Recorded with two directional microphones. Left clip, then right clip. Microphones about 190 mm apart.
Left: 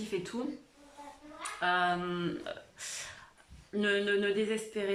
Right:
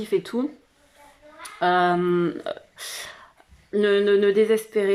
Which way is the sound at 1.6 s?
25° right (ahead or behind).